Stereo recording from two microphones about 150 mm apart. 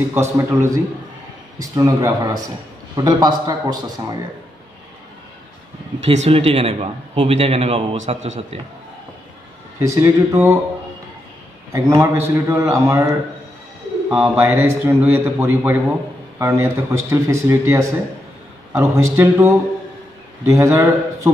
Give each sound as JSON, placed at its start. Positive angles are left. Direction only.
{"t": 0.1, "sound": "a man's voice", "side_deg": -15}
{"t": 5.9, "sound": "a man's voice", "side_deg": -45}
{"t": 9.8, "sound": "a man's voice", "side_deg": -15}
{"t": 11.7, "sound": "a man's voice", "side_deg": -20}